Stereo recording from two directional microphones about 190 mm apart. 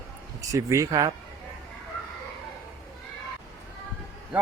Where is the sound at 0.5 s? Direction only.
15° right (ahead or behind).